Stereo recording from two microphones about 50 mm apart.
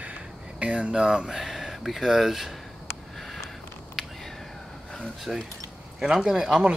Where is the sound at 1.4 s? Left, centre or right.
Centre.